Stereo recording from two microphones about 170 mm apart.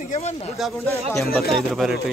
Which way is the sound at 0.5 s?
Centre (ahead or behind).